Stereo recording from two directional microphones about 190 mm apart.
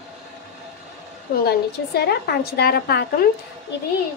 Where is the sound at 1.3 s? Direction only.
55° left (ahead or behind).